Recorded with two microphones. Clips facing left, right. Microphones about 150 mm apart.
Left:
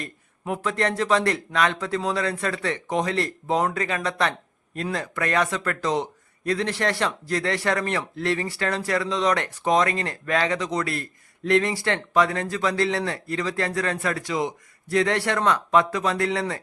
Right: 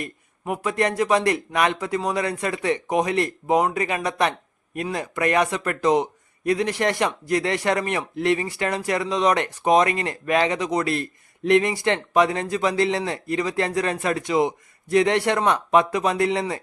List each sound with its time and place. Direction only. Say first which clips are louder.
0.0 s a man's voice: right 2 dB; 10° right (ahead or behind)